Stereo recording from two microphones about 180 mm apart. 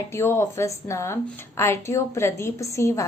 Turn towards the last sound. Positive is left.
turn(degrees=15)  # may be behind; listen again after turning